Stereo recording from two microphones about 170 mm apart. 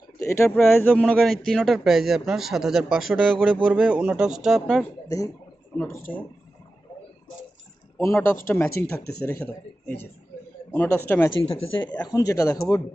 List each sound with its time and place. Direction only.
0.2 s speech: 15° left (ahead or behind)
5.0 s speech: 20° left (ahead or behind)
7.9 s speech: 15° left (ahead or behind)
11.4 s speech: 30° left (ahead or behind)